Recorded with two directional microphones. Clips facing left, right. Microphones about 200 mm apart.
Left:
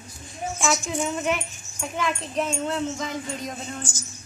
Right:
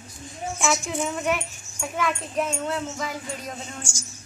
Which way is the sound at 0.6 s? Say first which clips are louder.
Even; centre (ahead or behind).